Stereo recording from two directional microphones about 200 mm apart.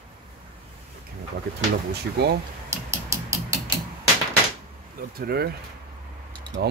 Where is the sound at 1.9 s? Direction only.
55° right (ahead or behind).